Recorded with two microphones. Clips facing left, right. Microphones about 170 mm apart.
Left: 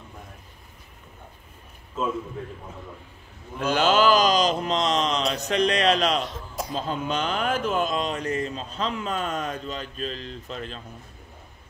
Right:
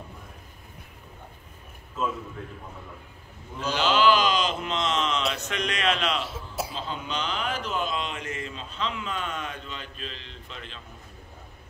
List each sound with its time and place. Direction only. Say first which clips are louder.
3.5 s speech: left 4 dB; 50° left (ahead or behind)
6.2 s a sound: even; 5° right (ahead or behind)
6.7 s speech: left 6 dB; 45° left (ahead or behind)